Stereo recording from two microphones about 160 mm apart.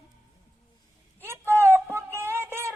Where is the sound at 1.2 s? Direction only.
15° right (ahead or behind).